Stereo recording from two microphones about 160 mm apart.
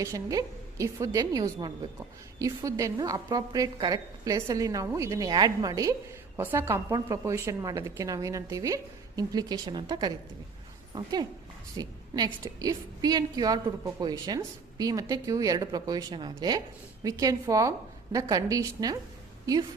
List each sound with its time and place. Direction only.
0.0 s a woman's voice: 20° right (ahead or behind)